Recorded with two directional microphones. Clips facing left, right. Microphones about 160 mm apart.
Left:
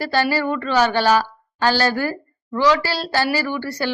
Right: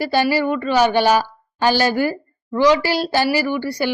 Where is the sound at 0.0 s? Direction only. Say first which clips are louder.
Right 2 dB; 15° right (ahead or behind).